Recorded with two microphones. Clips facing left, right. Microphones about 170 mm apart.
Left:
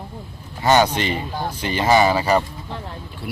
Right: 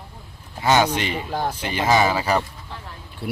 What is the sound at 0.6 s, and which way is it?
A man's voice, 5° right (ahead or behind).